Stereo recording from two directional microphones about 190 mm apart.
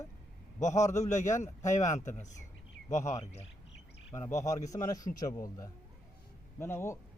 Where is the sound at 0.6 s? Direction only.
40° left (ahead or behind).